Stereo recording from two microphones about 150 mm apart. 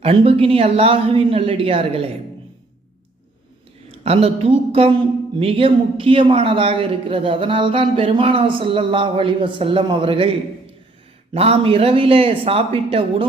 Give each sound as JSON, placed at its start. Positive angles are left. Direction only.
{"t": 0.0, "sound": "a man's voice", "side_deg": -40}
{"t": 4.0, "sound": "a man's voice", "side_deg": -40}
{"t": 11.3, "sound": "a man's voice", "side_deg": -40}